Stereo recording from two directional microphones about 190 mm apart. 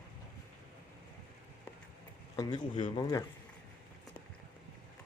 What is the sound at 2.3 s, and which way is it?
Speech, 20° left (ahead or behind).